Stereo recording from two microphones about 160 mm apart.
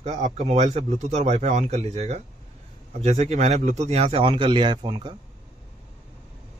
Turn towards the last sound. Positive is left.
turn(degrees=-30)  # may be behind; listen again after turning